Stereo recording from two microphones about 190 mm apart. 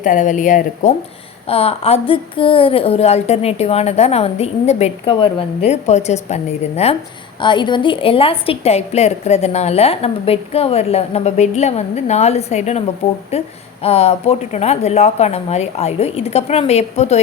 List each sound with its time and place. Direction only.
0.0 s speech: 40° left (ahead or behind)
1.5 s a woman's voice: 30° left (ahead or behind)
7.4 s a woman's voice: 25° left (ahead or behind)